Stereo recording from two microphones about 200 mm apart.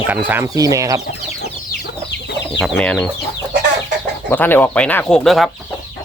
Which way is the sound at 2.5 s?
Centre (ahead or behind).